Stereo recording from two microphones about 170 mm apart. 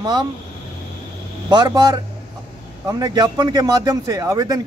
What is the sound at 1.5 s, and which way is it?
A man's voice, 25° right (ahead or behind).